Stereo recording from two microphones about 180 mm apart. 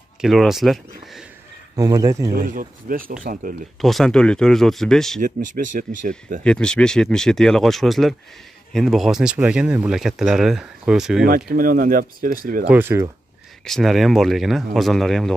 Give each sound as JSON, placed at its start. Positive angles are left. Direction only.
{"t": 0.2, "sound": "speech", "side_deg": 0}
{"t": 1.8, "sound": "speech", "side_deg": -20}
{"t": 2.3, "sound": "speech", "side_deg": -50}
{"t": 3.8, "sound": "speech", "side_deg": 0}
{"t": 5.2, "sound": "speech", "side_deg": -45}
{"t": 6.4, "sound": "speech", "side_deg": 5}
{"t": 11.2, "sound": "speech", "side_deg": -50}
{"t": 12.6, "sound": "speech", "side_deg": -10}
{"t": 13.7, "sound": "speech", "side_deg": 0}